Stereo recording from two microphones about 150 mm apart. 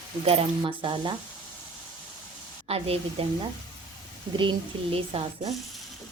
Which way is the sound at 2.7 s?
40° right (ahead or behind).